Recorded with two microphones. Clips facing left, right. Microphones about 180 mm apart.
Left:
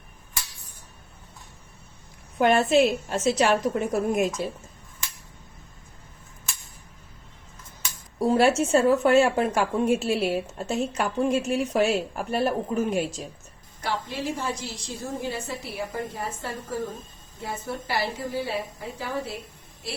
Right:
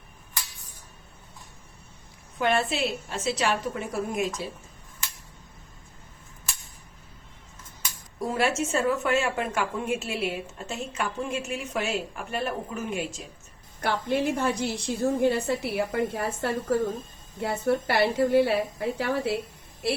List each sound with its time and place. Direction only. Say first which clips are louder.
2.4 s a woman's voice: left 6 dB; 45° left (ahead or behind)
8.2 s a woman's voice: left 6 dB; 30° left (ahead or behind)
13.8 s a woman's voice: right 4 dB; 60° right (ahead or behind)